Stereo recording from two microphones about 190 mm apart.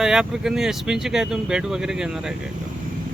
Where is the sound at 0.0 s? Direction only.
5° right (ahead or behind).